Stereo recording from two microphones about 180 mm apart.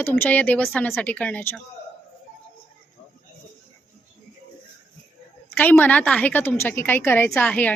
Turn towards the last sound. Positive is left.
turn(degrees=5)  # may be behind; listen again after turning